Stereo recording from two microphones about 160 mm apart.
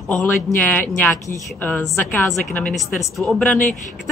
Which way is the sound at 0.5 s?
10° left (ahead or behind).